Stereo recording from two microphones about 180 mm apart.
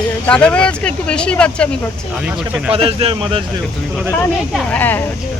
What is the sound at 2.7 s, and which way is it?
Speech, 30° right (ahead or behind).